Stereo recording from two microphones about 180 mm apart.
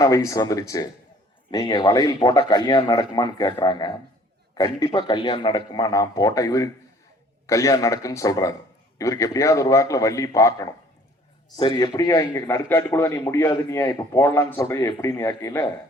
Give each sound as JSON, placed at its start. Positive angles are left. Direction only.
{"t": 0.0, "sound": "a man's voice", "side_deg": 20}